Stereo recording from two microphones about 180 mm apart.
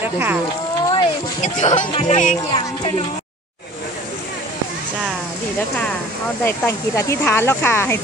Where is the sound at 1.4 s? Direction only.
40° left (ahead or behind).